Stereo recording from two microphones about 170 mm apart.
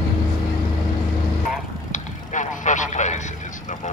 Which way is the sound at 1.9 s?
45° left (ahead or behind).